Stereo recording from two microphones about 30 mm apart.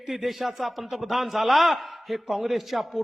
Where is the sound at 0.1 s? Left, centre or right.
Centre.